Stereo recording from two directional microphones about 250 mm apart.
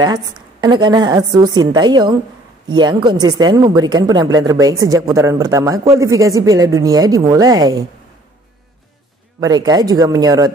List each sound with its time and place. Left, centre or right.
0.0 s a woman's voice: centre
9.4 s a woman's voice: centre